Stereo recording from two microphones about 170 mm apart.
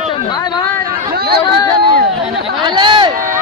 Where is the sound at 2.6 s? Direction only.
25° right (ahead or behind).